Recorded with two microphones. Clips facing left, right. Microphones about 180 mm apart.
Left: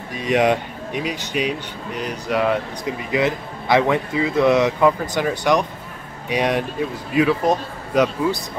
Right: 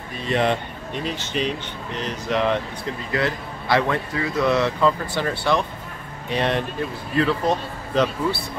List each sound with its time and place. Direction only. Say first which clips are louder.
0.2 s speech: left 4 dB; 15° left (ahead or behind)